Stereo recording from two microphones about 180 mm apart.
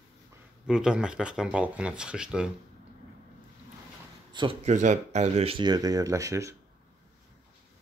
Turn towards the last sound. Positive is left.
turn(degrees=-15)  # may be behind; listen again after turning